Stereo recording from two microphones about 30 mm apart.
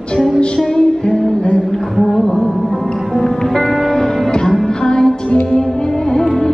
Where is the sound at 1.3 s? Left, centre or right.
Left.